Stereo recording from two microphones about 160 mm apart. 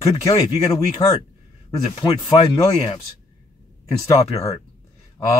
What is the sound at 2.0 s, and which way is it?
Speech, 30° left (ahead or behind).